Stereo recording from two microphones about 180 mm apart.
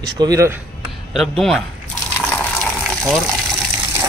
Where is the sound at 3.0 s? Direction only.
Centre (ahead or behind).